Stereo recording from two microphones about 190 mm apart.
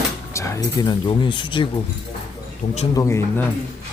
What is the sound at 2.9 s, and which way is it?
Speech, 15° left (ahead or behind).